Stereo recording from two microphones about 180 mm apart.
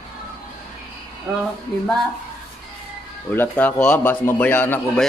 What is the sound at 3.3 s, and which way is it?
A man's voice, 10° left (ahead or behind).